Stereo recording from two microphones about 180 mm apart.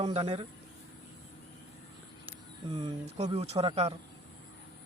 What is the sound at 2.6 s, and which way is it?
Speech, 30° right (ahead or behind).